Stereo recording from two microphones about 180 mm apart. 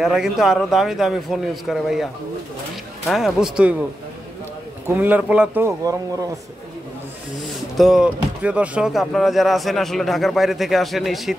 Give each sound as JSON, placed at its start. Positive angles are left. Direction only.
{"t": 0.0, "sound": "speech", "side_deg": 0}
{"t": 3.1, "sound": "speech", "side_deg": 0}
{"t": 4.8, "sound": "a man's voice", "side_deg": -10}
{"t": 7.7, "sound": "speech", "side_deg": 0}